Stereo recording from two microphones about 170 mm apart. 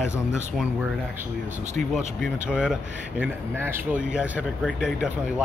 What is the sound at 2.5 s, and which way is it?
Speech, 5° right (ahead or behind).